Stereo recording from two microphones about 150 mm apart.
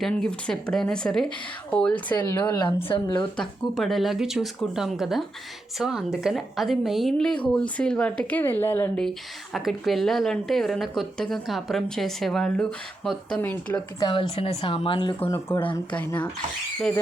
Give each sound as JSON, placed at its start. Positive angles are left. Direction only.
{"t": 0.0, "sound": "a woman's voice", "side_deg": 5}
{"t": 2.1, "sound": "speech", "side_deg": 20}
{"t": 2.6, "sound": "speech", "side_deg": 30}
{"t": 3.3, "sound": "a woman's voice", "side_deg": 5}
{"t": 9.0, "sound": "a woman's voice", "side_deg": 0}
{"t": 14.0, "sound": "speech", "side_deg": 35}
{"t": 15.2, "sound": "speech", "side_deg": 15}